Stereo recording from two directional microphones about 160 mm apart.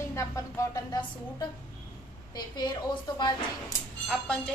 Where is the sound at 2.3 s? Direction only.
25° left (ahead or behind).